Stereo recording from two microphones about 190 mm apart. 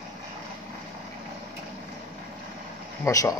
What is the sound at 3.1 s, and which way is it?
Speech, 15° left (ahead or behind).